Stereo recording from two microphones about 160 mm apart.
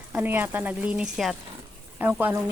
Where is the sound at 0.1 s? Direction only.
10° right (ahead or behind).